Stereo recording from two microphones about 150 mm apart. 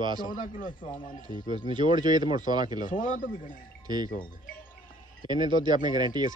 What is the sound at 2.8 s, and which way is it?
Speech, 65° left (ahead or behind).